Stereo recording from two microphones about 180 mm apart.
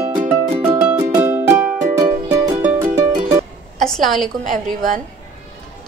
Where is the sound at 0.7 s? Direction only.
10° right (ahead or behind).